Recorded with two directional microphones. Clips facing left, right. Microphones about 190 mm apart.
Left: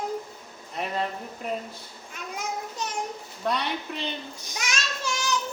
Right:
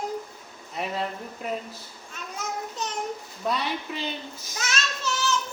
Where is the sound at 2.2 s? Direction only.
10° left (ahead or behind).